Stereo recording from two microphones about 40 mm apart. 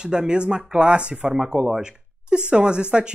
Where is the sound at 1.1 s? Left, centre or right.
Centre.